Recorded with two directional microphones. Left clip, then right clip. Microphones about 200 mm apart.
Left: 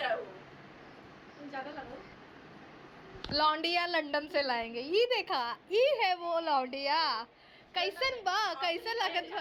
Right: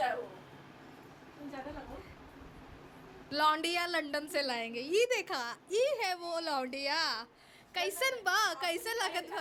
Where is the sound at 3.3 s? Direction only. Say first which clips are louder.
Left 1 dB; 15° right (ahead or behind).